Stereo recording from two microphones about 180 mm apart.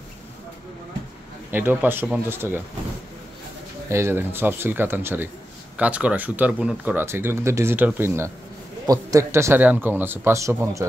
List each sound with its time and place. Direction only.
1.5 s speech: 10° right (ahead or behind)
3.9 s speech: 15° right (ahead or behind)